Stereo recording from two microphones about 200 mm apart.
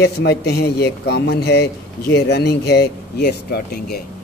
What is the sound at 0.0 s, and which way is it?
A man's voice, 55° left (ahead or behind).